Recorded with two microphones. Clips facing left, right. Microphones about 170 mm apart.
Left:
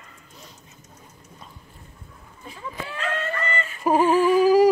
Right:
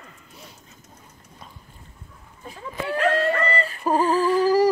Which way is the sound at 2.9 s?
35° right (ahead or behind).